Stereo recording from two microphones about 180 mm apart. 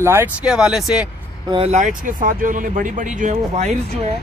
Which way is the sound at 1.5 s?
35° right (ahead or behind).